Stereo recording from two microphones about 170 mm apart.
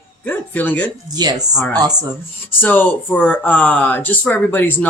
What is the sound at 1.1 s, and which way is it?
Speech, 25° right (ahead or behind).